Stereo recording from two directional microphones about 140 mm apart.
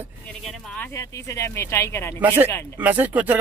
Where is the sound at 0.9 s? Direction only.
20° left (ahead or behind).